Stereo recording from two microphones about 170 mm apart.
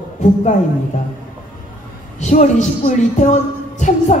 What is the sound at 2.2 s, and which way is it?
Speech, 45° left (ahead or behind).